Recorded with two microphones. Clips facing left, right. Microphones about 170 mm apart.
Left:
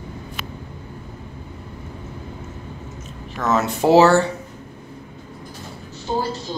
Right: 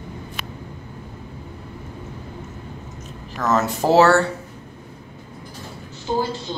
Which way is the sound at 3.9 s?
20° left (ahead or behind).